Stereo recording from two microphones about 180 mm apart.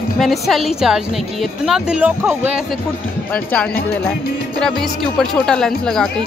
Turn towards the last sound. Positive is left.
turn(degrees=5)  # may be behind; listen again after turning